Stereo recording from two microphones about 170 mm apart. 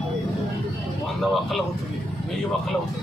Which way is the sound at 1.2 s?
Centre (ahead or behind).